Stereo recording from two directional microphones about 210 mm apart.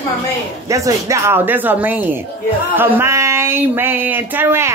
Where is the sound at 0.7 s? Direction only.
15° right (ahead or behind).